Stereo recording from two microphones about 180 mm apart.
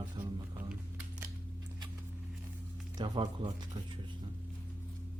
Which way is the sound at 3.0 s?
25° right (ahead or behind).